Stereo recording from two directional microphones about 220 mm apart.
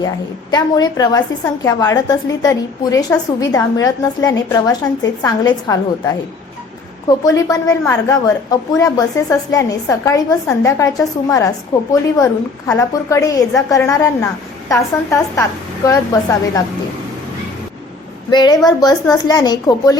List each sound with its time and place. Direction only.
0.5 s a woman's voice: 15° left (ahead or behind)
7.3 s a woman's voice: 15° left (ahead or behind)
18.3 s a woman's voice: 20° left (ahead or behind)